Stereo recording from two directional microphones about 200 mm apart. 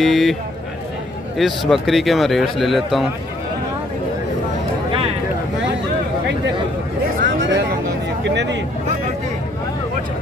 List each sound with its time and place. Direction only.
0.0 s speech: centre (ahead or behind)
1.4 s speech: centre (ahead or behind)
7.2 s a sound: 65° right (ahead or behind)